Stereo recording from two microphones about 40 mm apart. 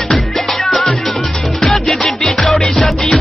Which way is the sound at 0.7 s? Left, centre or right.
Centre.